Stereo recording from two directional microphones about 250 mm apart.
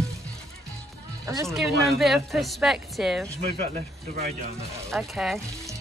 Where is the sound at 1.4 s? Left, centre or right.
Centre.